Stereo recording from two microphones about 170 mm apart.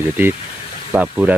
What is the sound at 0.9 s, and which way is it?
Speech, 10° right (ahead or behind).